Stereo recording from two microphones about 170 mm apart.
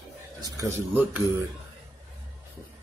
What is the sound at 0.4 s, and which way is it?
Speech, 20° right (ahead or behind).